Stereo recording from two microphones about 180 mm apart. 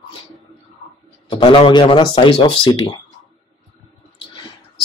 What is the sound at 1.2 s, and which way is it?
Speech, 30° left (ahead or behind).